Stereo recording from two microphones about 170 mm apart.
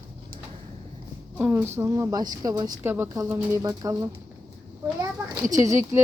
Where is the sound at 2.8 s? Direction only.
15° right (ahead or behind).